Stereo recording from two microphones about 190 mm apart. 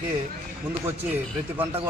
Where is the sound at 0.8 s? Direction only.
10° right (ahead or behind).